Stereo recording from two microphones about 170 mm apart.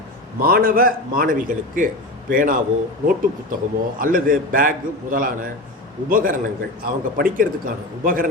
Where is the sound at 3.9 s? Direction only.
55° right (ahead or behind).